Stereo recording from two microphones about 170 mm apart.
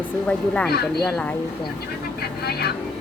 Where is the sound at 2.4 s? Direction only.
70° left (ahead or behind).